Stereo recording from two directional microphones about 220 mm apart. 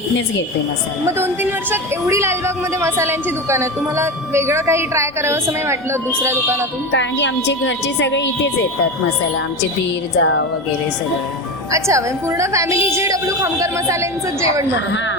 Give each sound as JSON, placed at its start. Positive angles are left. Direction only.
{"t": 1.0, "sound": "a woman's voice", "side_deg": -10}
{"t": 6.9, "sound": "a woman's voice", "side_deg": 55}
{"t": 10.2, "sound": "a woman's voice", "side_deg": 60}
{"t": 11.7, "sound": "a woman's voice", "side_deg": -15}